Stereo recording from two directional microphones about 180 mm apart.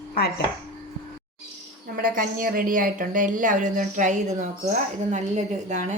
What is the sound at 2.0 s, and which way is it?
A woman's voice, 50° right (ahead or behind).